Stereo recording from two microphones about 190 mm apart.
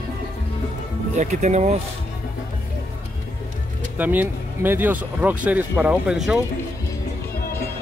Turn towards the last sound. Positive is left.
turn(degrees=-5)  # may be behind; listen again after turning